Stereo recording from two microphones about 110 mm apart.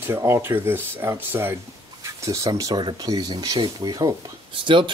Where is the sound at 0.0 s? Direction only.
20° right (ahead or behind).